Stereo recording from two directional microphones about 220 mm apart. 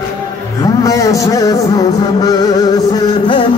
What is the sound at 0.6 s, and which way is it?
Music, 15° left (ahead or behind).